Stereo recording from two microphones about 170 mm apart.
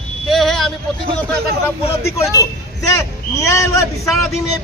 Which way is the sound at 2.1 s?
20° left (ahead or behind).